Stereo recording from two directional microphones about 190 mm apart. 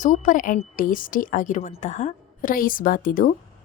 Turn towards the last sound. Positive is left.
turn(degrees=45)  # may be behind; listen again after turning